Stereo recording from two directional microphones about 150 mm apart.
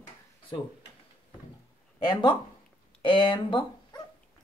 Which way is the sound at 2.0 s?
35° left (ahead or behind).